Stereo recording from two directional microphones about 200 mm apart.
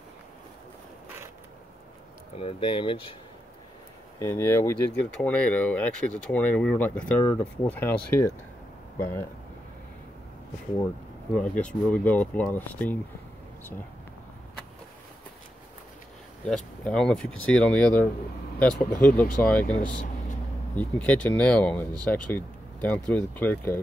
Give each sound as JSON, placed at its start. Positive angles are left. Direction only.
{"t": 2.3, "sound": "speech", "side_deg": 30}
{"t": 4.2, "sound": "speech", "side_deg": 10}
{"t": 11.3, "sound": "speech", "side_deg": 5}
{"t": 16.4, "sound": "speech", "side_deg": 5}
{"t": 19.6, "sound": "speech", "side_deg": 40}
{"t": 20.7, "sound": "speech", "side_deg": 5}